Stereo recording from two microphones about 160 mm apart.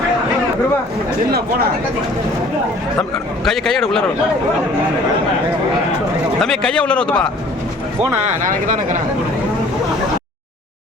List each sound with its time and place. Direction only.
3.4 s a man's voice: 5° left (ahead or behind)
6.4 s a man's voice: 5° left (ahead or behind)
8.4 s speech: 55° right (ahead or behind)